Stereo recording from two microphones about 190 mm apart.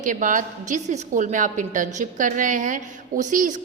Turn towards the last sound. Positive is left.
turn(degrees=-45)  # may be behind; listen again after turning